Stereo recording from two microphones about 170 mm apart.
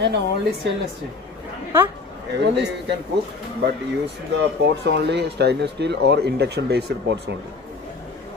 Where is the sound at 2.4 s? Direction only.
85° right.